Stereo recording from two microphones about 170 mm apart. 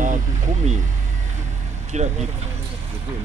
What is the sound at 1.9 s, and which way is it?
Speech, 40° right (ahead or behind).